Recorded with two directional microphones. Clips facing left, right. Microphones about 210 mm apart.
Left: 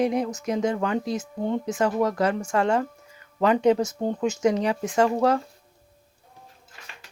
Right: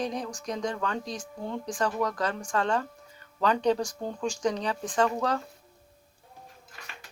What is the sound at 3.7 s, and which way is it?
Speech, 20° left (ahead or behind).